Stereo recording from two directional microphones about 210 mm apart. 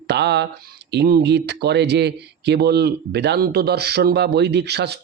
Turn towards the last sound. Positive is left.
turn(degrees=-50)  # may be behind; listen again after turning